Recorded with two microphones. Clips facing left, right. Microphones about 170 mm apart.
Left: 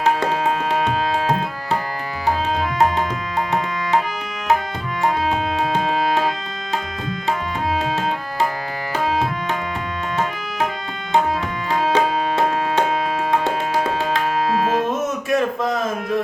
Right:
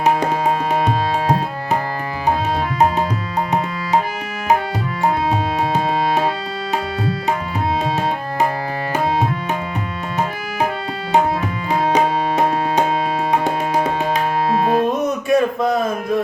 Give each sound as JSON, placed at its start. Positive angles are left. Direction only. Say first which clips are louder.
{"t": 0.0, "sound": "tabla", "louder": "right 2 dB", "side_deg": -15}
{"t": 11.9, "sound": "music", "louder": "right 2 dB", "side_deg": -15}
{"t": 14.8, "sound": "a sound", "louder": "right 4 dB", "side_deg": 0}